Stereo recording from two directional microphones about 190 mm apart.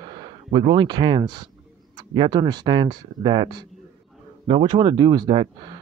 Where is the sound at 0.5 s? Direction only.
25° right (ahead or behind).